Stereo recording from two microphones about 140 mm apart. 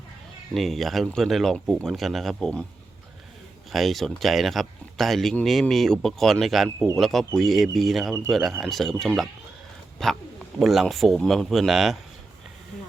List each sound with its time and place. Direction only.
0.5 s speech: centre (ahead or behind)
3.7 s speech: centre (ahead or behind)